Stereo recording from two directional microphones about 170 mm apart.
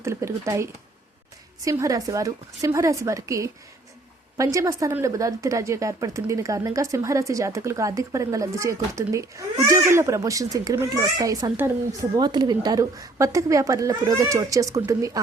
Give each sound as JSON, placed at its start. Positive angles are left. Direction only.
{"t": 0.0, "sound": "a woman's voice", "side_deg": -15}